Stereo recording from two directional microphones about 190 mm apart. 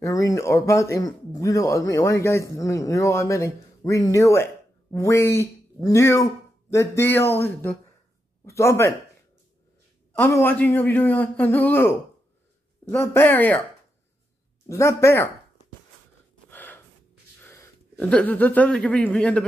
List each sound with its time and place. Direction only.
0.0 s speech: 15° left (ahead or behind)
10.1 s speech: 10° left (ahead or behind)
14.7 s speech: 15° left (ahead or behind)
16.4 s gasp: 10° left (ahead or behind)
17.5 s speech: 10° left (ahead or behind)